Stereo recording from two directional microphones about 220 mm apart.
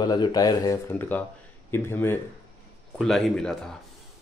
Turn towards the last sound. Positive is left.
turn(degrees=5)  # may be behind; listen again after turning